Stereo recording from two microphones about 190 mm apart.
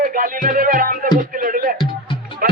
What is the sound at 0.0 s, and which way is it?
Music, 45° right (ahead or behind).